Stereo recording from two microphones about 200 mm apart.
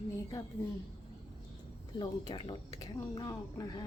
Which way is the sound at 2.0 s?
20° left (ahead or behind).